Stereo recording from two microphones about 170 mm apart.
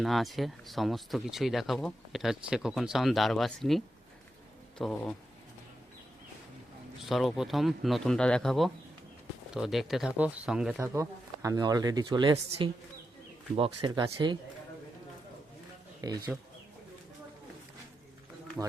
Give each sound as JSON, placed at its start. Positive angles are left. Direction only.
{"t": 0.0, "sound": "speech", "side_deg": 0}
{"t": 7.0, "sound": "speech", "side_deg": 0}
{"t": 10.8, "sound": "speech", "side_deg": -15}
{"t": 16.0, "sound": "speech", "side_deg": -20}